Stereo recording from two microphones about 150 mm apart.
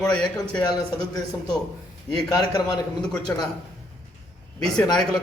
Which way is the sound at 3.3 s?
15° left (ahead or behind).